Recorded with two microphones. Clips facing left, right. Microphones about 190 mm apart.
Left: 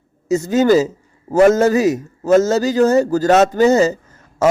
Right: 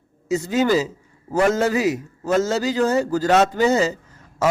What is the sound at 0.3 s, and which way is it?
A man's voice, 45° left (ahead or behind).